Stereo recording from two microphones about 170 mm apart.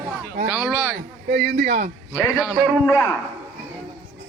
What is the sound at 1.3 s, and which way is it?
Speech, 70° right (ahead or behind).